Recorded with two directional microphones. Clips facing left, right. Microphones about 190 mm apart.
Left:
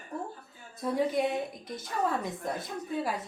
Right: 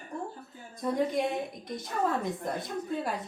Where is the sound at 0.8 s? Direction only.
5° left (ahead or behind).